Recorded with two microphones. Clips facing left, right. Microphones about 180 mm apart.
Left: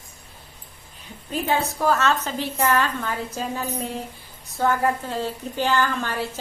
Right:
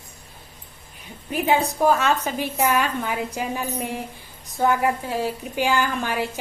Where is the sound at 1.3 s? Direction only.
15° right (ahead or behind).